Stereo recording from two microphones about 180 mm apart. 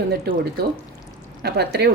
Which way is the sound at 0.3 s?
65° right (ahead or behind).